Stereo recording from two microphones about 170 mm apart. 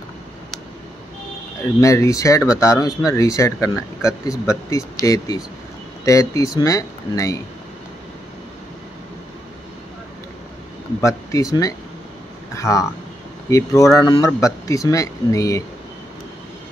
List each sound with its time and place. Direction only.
1.8 s speech: 20° left (ahead or behind)
11.0 s speech: 20° left (ahead or behind)
12.5 s speech: 20° left (ahead or behind)